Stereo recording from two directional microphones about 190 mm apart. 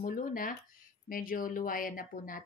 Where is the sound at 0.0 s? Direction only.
45° left (ahead or behind).